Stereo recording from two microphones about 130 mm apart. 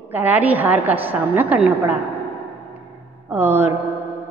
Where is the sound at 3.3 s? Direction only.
15° right (ahead or behind).